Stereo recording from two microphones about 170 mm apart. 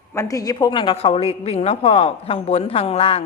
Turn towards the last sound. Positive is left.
turn(degrees=35)  # may be behind; listen again after turning